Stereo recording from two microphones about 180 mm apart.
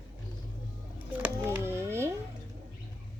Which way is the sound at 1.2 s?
10° right (ahead or behind).